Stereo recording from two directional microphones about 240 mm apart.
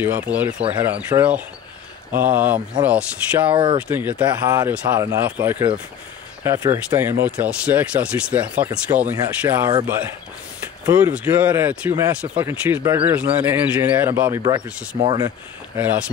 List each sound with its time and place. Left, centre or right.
0.0 s speech: centre
3.5 s speech: centre